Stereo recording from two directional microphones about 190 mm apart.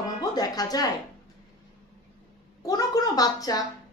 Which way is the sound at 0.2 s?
20° left (ahead or behind).